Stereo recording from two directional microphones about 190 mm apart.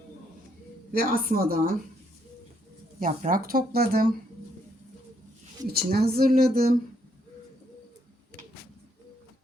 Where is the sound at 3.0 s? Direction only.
45° right (ahead or behind).